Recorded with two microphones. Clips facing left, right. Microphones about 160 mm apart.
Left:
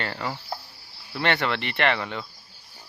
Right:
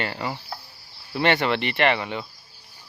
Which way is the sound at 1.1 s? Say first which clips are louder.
Right 4 dB; 15° right (ahead or behind).